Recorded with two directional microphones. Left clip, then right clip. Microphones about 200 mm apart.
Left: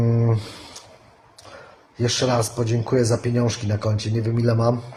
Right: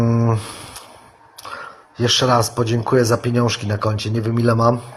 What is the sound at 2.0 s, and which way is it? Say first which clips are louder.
A man's voice: right 6 dB; 10° right (ahead or behind).